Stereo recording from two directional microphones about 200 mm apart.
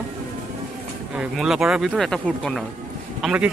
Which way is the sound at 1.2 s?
Centre (ahead or behind).